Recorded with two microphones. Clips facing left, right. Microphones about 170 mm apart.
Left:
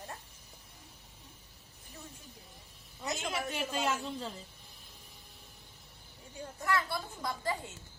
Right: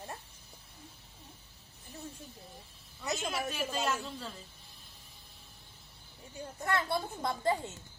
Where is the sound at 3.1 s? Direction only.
20° left (ahead or behind).